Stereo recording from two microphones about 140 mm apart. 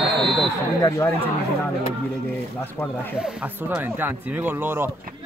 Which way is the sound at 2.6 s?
15° left (ahead or behind).